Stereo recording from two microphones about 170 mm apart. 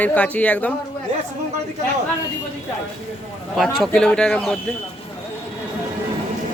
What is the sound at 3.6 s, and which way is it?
Speech, centre (ahead or behind).